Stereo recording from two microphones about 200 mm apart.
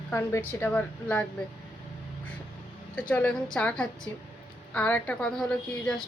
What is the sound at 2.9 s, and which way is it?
A woman's voice, 5° left (ahead or behind).